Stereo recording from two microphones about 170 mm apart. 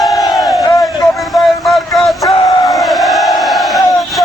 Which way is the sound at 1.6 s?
Centre (ahead or behind).